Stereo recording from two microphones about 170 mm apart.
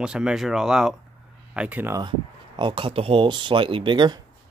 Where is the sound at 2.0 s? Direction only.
30° right (ahead or behind).